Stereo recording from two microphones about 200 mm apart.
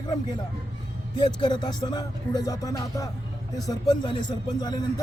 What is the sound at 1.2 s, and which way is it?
Speech, 20° left (ahead or behind).